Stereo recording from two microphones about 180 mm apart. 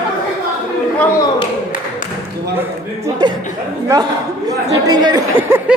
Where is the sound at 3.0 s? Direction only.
25° right (ahead or behind).